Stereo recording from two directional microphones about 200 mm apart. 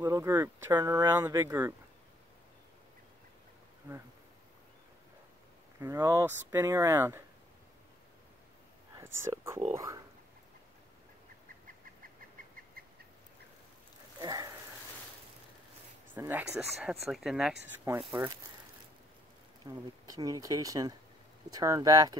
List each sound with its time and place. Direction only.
0.0 s speech: 15° right (ahead or behind)
5.8 s speech: 15° right (ahead or behind)
8.9 s speech: 15° right (ahead or behind)
14.2 s a sound: 20° right (ahead or behind)
16.2 s speech: 10° right (ahead or behind)
19.6 s speech: 20° right (ahead or behind)